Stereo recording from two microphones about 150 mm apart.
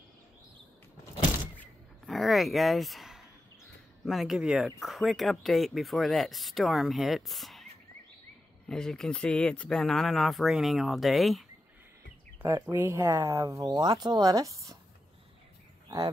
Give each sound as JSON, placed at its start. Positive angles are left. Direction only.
{"t": 1.6, "sound": "a sound", "side_deg": 0}
{"t": 4.0, "sound": "speech", "side_deg": 0}
{"t": 8.6, "sound": "speech", "side_deg": 5}
{"t": 12.4, "sound": "speech", "side_deg": -15}